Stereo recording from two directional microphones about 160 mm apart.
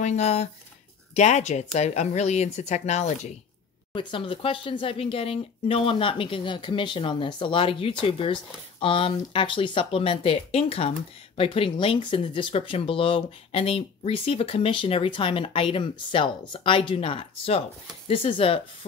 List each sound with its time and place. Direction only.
0.0 s speech: 45° left (ahead or behind)
3.9 s speech: 30° left (ahead or behind)